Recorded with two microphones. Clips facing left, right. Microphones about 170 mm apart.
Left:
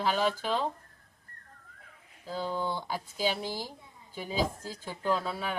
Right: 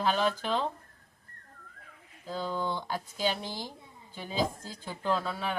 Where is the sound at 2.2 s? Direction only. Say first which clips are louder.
Even; 5° left (ahead or behind).